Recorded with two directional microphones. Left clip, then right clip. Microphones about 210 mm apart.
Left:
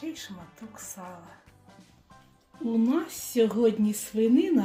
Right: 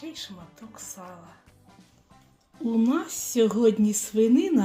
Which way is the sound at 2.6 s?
25° right (ahead or behind).